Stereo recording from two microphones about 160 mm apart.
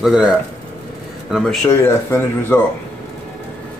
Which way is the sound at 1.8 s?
15° left (ahead or behind).